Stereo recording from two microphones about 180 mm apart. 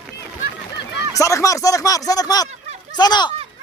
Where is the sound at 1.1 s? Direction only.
15° left (ahead or behind).